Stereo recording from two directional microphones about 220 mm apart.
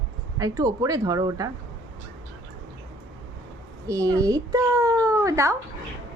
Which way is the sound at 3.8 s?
15° right (ahead or behind).